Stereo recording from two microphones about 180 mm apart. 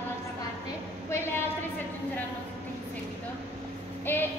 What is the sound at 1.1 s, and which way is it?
Speech, 15° left (ahead or behind).